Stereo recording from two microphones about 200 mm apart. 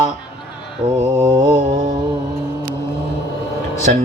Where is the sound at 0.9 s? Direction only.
15° right (ahead or behind).